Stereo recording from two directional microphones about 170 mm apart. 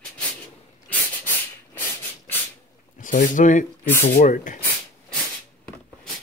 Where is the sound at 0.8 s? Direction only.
10° left (ahead or behind).